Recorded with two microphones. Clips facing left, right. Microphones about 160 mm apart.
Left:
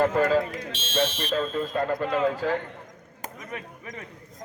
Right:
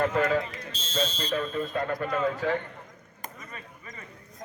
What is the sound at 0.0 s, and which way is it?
Speech, 30° left (ahead or behind).